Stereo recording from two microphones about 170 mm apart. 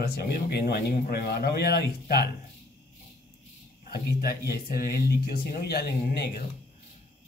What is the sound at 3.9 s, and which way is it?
Speech, 65° left (ahead or behind).